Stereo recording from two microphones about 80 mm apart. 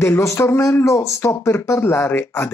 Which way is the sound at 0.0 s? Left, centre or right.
Left.